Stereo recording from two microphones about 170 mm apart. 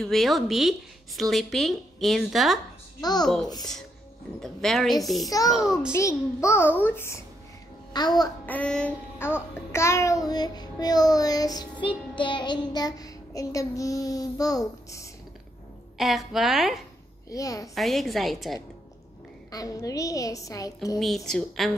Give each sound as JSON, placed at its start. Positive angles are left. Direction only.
{"t": 0.0, "sound": "a woman's voice", "side_deg": 0}
{"t": 3.0, "sound": "child singing", "side_deg": 25}
{"t": 4.4, "sound": "a woman's voice", "side_deg": 0}
{"t": 5.9, "sound": "a child's voice", "side_deg": 15}
{"t": 7.9, "sound": "child singing", "side_deg": 25}
{"t": 8.5, "sound": "child singing", "side_deg": 5}
{"t": 16.0, "sound": "a woman's voice", "side_deg": 0}
{"t": 17.3, "sound": "child singing", "side_deg": 20}
{"t": 17.7, "sound": "a woman's voice", "side_deg": 0}
{"t": 19.5, "sound": "child singing", "side_deg": 20}
{"t": 21.0, "sound": "a woman's voice", "side_deg": 0}